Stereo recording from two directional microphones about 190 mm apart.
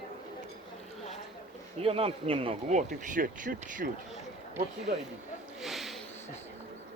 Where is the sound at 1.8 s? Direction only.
30° right (ahead or behind).